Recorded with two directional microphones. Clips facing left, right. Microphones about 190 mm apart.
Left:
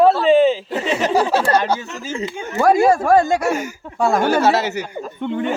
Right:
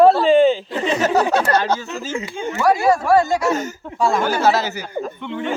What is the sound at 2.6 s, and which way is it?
Speech, 50° left (ahead or behind).